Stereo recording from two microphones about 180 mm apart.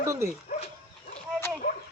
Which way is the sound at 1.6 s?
50° left (ahead or behind).